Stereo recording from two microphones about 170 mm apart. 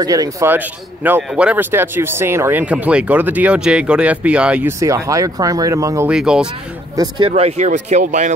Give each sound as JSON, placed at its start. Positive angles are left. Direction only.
{"t": 0.0, "sound": "speech", "side_deg": -20}
{"t": 6.0, "sound": "speech", "side_deg": -5}
{"t": 7.2, "sound": "speech", "side_deg": -35}